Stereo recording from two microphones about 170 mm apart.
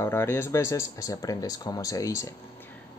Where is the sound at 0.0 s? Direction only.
15° left (ahead or behind).